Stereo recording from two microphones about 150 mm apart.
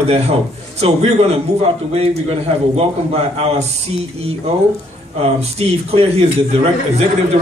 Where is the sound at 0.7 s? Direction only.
45° right (ahead or behind).